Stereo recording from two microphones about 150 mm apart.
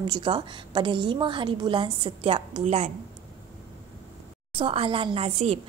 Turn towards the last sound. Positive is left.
turn(degrees=-40)  # may be behind; listen again after turning